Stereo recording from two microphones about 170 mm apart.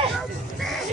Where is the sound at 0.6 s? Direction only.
Centre (ahead or behind).